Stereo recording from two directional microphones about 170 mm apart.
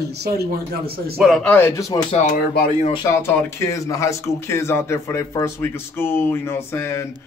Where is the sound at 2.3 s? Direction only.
60° left (ahead or behind).